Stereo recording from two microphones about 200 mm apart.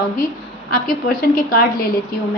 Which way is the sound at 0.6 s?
45° left (ahead or behind).